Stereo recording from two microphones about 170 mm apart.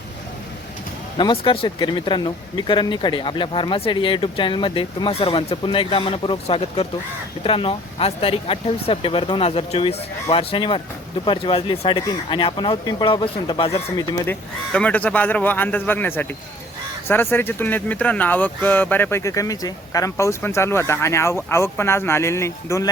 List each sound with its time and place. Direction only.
1.2 s speech: 30° left (ahead or behind)
14.3 s speech: 5° left (ahead or behind)